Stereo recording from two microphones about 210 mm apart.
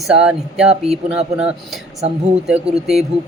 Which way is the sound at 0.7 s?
30° right (ahead or behind).